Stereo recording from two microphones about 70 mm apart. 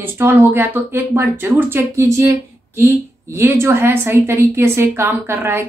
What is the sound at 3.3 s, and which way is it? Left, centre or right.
A woman's voice, right.